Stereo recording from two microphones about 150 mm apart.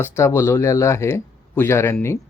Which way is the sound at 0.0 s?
15° left (ahead or behind).